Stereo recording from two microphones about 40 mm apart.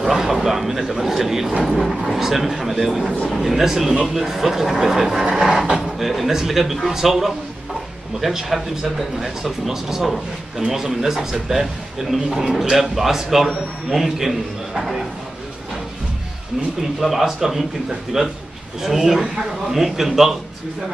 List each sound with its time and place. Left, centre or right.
0.0 s speech: centre
17.0 s speech: centre